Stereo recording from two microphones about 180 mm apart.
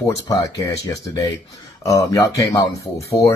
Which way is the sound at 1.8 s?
20° left (ahead or behind).